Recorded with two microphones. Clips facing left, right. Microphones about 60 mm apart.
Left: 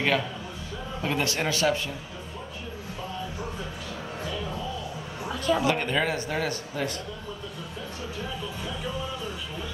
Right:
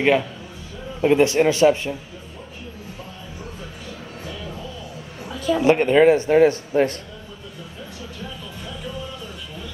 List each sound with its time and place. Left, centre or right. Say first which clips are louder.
1.0 s speech: right 12 dB; right
5.3 s a sound: right 3 dB; centre
5.6 s speech: right 10 dB; right